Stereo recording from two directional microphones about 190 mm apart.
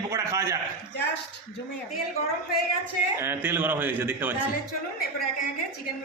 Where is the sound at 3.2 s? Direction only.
10° right (ahead or behind).